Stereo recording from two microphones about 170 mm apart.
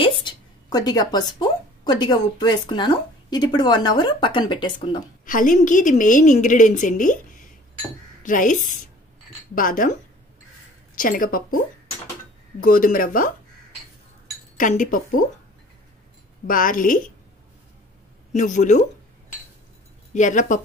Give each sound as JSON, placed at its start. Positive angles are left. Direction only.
{"t": 0.0, "sound": "speech", "side_deg": 25}
{"t": 5.2, "sound": "a woman's voice", "side_deg": 50}
{"t": 8.2, "sound": "a woman's voice", "side_deg": 50}
{"t": 11.0, "sound": "speech", "side_deg": 55}
{"t": 14.6, "sound": "a woman's voice", "side_deg": 50}
{"t": 16.4, "sound": "a woman's voice", "side_deg": 55}
{"t": 18.3, "sound": "a woman's voice", "side_deg": 45}
{"t": 20.2, "sound": "a woman's voice", "side_deg": 50}